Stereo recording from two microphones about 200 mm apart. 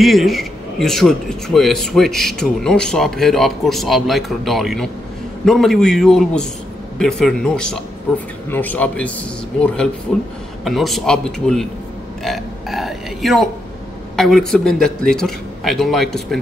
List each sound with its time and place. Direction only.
0.0 s speech: centre (ahead or behind)
12.2 s burping: centre (ahead or behind)
14.1 s speech: centre (ahead or behind)